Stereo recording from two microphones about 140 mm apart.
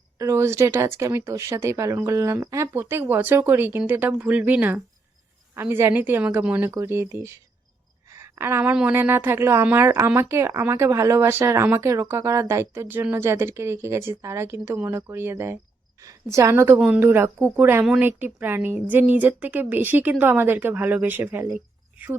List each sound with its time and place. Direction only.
0.2 s speech: 20° right (ahead or behind)
8.1 s a sound: 20° right (ahead or behind)
8.7 s a woman's voice: 10° right (ahead or behind)